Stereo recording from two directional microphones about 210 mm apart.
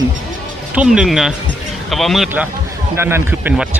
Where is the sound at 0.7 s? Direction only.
5° right (ahead or behind).